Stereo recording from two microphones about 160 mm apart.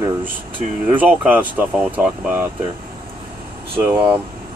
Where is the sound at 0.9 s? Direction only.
10° right (ahead or behind).